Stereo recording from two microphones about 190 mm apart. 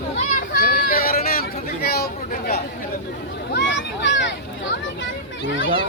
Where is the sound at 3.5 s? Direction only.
70° left (ahead or behind).